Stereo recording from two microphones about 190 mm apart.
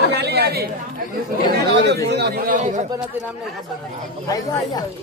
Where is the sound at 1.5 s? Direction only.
60° right (ahead or behind); by 2.8 s 40° right (ahead or behind).